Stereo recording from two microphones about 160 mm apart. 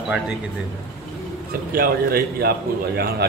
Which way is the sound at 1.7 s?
70° right (ahead or behind).